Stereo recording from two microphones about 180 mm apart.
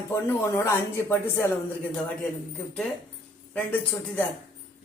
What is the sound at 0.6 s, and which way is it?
Speech, 15° left (ahead or behind).